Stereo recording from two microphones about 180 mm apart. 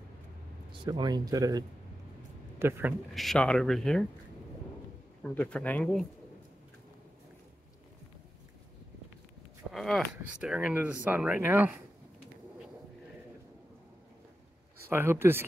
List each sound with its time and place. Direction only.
0.7 s speech: 25° right (ahead or behind)
2.6 s speech: 15° right (ahead or behind)
3.2 s speech: 5° left (ahead or behind)
5.3 s speech: 10° left (ahead or behind)
9.7 s speech: centre (ahead or behind)
14.9 s speech: 15° right (ahead or behind)